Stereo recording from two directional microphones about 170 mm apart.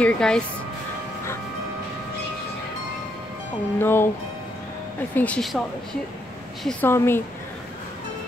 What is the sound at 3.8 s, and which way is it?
Speech, 15° left (ahead or behind).